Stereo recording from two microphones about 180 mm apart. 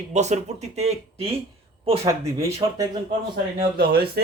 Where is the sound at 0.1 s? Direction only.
40° right (ahead or behind).